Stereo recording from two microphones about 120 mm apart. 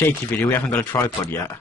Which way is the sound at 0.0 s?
15° left (ahead or behind).